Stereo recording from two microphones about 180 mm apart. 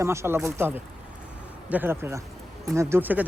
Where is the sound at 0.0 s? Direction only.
15° right (ahead or behind).